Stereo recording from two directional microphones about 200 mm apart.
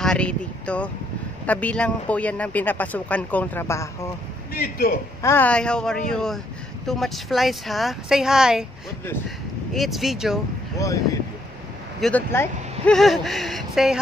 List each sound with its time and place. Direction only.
0.0 s a man's voice: 5° left (ahead or behind)
4.6 s a man's voice: 50° left (ahead or behind)
5.2 s speech: 10° left (ahead or behind)
9.8 s speech: centre (ahead or behind)
12.0 s speech: 10° left (ahead or behind)